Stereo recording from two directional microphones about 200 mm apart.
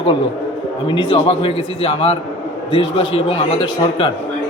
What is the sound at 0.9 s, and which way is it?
A man's voice, 25° left (ahead or behind).